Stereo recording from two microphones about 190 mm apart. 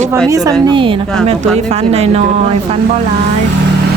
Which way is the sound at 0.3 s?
20° right (ahead or behind).